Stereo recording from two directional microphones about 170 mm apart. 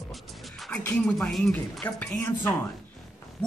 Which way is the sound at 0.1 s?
5° left (ahead or behind).